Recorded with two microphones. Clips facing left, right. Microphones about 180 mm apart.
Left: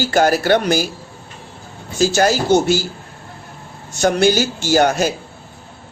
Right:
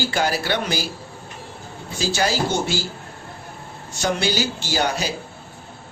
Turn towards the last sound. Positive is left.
turn(degrees=50)  # may be behind; listen again after turning